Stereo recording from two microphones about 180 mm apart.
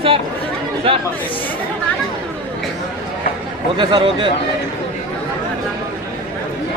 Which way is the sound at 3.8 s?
25° right (ahead or behind).